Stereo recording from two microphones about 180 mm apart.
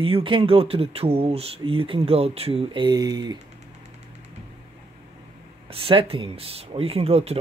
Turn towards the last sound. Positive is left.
turn(degrees=-35)  # may be behind; listen again after turning